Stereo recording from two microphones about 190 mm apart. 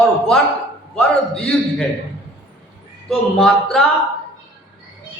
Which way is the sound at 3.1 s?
5° left (ahead or behind).